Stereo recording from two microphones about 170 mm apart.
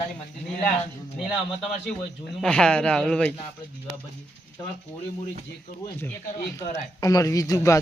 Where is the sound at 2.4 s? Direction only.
5° left (ahead or behind).